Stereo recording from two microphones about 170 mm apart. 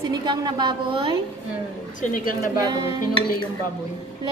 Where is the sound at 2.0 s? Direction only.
55° left (ahead or behind).